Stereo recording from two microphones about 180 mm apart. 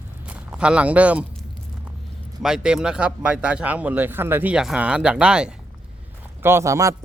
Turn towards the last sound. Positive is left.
turn(degrees=-15)  # may be behind; listen again after turning